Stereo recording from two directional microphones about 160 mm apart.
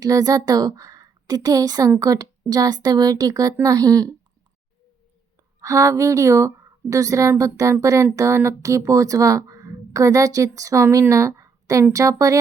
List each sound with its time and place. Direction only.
0.0 s speech: 25° right (ahead or behind)
5.5 s speech: 20° right (ahead or behind)